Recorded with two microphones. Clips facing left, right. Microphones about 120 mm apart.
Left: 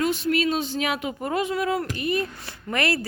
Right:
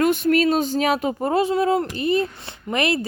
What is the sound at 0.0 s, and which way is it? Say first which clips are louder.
Speech: right 5 dB; 55° right (ahead or behind).